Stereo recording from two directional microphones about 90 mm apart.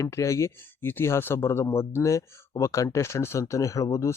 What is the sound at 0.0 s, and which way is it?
Speech, 35° left (ahead or behind).